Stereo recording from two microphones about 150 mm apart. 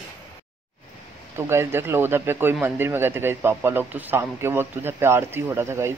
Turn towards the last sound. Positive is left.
turn(degrees=-15)  # may be behind; listen again after turning